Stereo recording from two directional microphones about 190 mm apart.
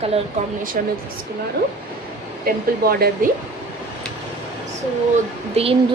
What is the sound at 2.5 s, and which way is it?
Speech, 50° right (ahead or behind).